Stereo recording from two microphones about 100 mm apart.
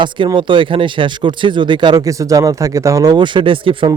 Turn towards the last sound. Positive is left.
turn(degrees=-60)  # may be behind; listen again after turning